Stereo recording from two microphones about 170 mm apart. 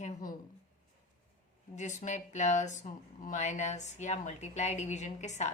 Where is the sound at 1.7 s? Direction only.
45° left (ahead or behind).